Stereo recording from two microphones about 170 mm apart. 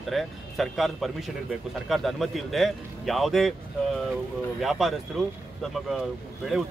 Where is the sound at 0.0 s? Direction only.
Centre (ahead or behind).